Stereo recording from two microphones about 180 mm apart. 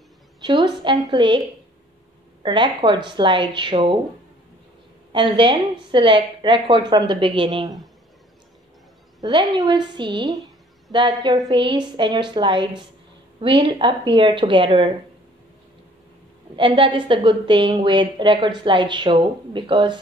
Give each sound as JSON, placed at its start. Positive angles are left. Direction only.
{"t": 0.4, "sound": "a woman's voice", "side_deg": -25}
{"t": 2.4, "sound": "a woman's voice", "side_deg": -25}
{"t": 5.1, "sound": "a woman's voice", "side_deg": -25}
{"t": 9.2, "sound": "a woman's voice", "side_deg": -25}
{"t": 16.5, "sound": "a woman's voice", "side_deg": -30}